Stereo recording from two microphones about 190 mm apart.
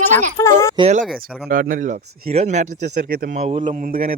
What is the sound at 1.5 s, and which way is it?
Speech, 45° right (ahead or behind).